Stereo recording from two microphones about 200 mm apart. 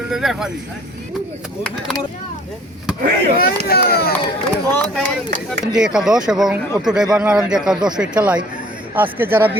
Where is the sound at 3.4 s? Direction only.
50° left (ahead or behind).